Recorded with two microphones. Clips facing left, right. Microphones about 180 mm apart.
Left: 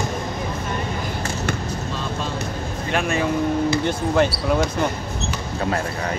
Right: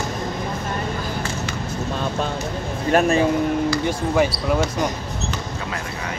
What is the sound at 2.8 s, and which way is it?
Speech, 40° right (ahead or behind).